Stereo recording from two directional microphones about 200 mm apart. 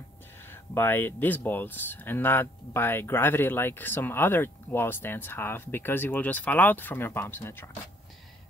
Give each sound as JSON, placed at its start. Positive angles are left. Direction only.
{"t": 0.7, "sound": "speech", "side_deg": 10}